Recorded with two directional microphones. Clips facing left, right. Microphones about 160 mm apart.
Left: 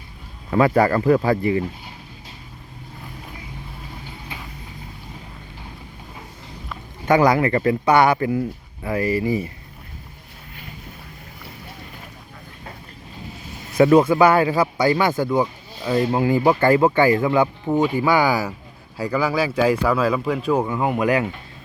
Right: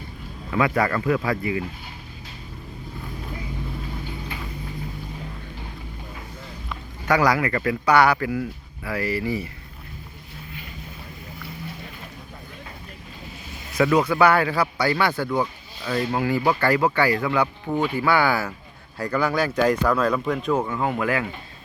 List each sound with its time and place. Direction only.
0.5 s speech: 35° left (ahead or behind)
7.0 s speech: 25° left (ahead or behind)
13.7 s speech: 30° left (ahead or behind)